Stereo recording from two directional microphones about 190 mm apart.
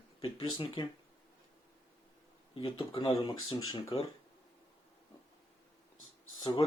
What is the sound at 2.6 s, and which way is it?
Speech, 25° left (ahead or behind).